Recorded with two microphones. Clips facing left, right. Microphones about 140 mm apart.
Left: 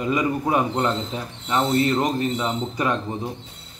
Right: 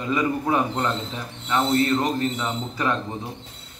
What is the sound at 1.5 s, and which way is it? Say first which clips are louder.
Mechanisms: left 1 dB; 20° left (ahead or behind).